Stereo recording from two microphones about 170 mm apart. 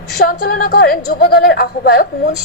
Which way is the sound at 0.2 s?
60° left (ahead or behind).